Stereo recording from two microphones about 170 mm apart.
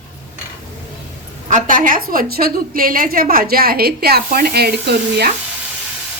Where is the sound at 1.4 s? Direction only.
50° right (ahead or behind); by 5.3 s 70° right (ahead or behind).